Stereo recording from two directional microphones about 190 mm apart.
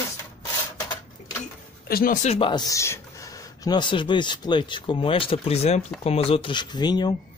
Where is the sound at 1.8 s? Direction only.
50° left (ahead or behind).